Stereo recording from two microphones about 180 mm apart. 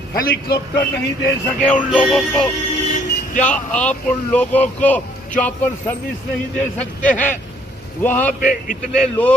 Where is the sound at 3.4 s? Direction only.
5° left (ahead or behind).